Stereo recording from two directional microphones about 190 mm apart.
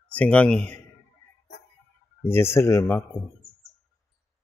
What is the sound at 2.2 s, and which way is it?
Speech, 10° left (ahead or behind).